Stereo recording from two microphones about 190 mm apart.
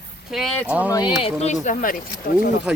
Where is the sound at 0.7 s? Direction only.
10° right (ahead or behind).